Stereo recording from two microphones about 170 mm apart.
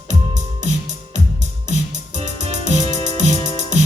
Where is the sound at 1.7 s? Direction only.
45° right (ahead or behind).